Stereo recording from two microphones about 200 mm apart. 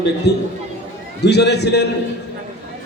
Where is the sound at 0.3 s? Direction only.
55° left (ahead or behind).